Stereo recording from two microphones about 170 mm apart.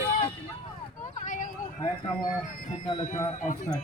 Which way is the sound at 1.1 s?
50° left (ahead or behind).